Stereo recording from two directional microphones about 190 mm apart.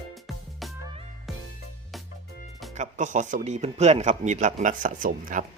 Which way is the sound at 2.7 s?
40° right (ahead or behind).